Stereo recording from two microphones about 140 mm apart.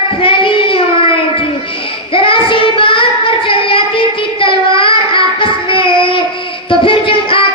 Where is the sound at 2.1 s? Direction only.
40° left (ahead or behind).